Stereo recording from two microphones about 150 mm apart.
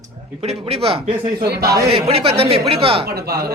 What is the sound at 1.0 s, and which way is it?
Speech, 90° right.